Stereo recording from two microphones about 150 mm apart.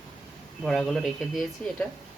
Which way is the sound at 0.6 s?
Centre (ahead or behind).